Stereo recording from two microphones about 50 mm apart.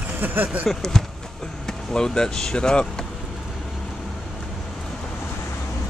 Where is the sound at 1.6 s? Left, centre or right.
Centre.